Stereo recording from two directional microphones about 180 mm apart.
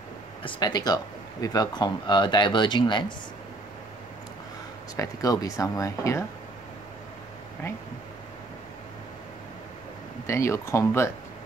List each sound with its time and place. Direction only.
0.4 s speech: 25° left (ahead or behind)
4.9 s speech: 20° left (ahead or behind)
10.2 s speech: 15° left (ahead or behind)